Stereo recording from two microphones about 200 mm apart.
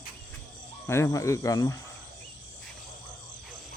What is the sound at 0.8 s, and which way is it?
Speech, 15° left (ahead or behind).